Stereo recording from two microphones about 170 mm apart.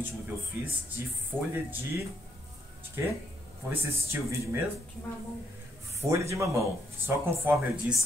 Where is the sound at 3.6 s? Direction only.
15° right (ahead or behind).